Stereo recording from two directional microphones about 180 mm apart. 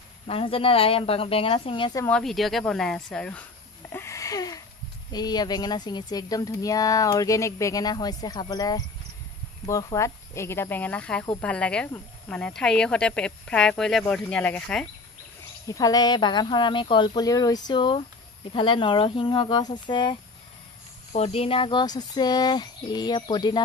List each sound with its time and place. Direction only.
0.3 s speech: 30° left (ahead or behind)
2.0 s speech: 5° left (ahead or behind)
3.9 s a sound: 15° left (ahead or behind)
5.1 s speech: 20° left (ahead or behind); by 14.9 s 5° left (ahead or behind)
15.6 s speech: 20° left (ahead or behind)